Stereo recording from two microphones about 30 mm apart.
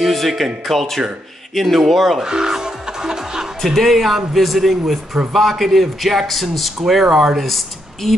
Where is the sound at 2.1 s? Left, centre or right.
Right.